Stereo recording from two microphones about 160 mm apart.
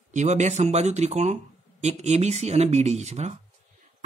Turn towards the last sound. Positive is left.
turn(degrees=-45)  # may be behind; listen again after turning